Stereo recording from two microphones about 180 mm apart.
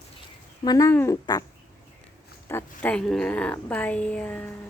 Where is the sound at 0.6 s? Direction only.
20° left (ahead or behind).